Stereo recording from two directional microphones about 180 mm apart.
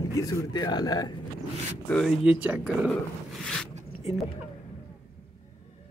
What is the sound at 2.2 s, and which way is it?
Speech, 5° right (ahead or behind).